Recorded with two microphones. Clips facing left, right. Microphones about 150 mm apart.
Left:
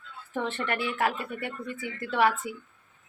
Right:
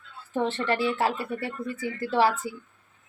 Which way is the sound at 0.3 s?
30° right (ahead or behind).